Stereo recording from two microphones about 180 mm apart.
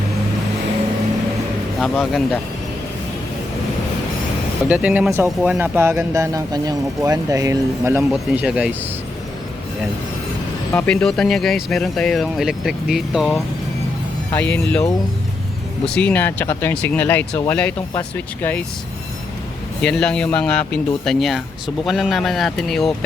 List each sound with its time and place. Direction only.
1.8 s speech: centre (ahead or behind)
4.7 s speech: 5° right (ahead or behind)
10.7 s speech: 10° left (ahead or behind)
14.5 s speech: 5° left (ahead or behind)
16.0 s speech: 10° left (ahead or behind)
19.8 s speech: 5° left (ahead or behind)